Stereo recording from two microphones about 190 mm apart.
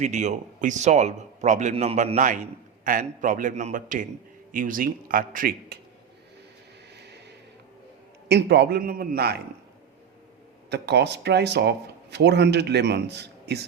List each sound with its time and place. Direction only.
0.0 s a man's voice: 40° right (ahead or behind)
6.9 s a sound: 60° right (ahead or behind)
8.3 s speech: 60° right (ahead or behind)
10.7 s speech: 60° right (ahead or behind)